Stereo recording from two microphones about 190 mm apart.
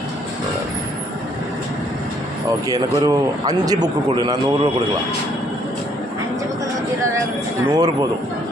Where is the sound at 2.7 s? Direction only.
20° right (ahead or behind).